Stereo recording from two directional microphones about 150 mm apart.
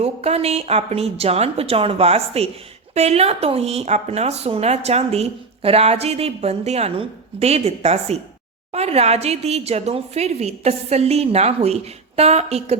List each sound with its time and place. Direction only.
0.0 s speech: 45° right (ahead or behind)